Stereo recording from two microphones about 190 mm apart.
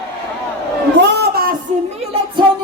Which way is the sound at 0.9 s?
60° right (ahead or behind).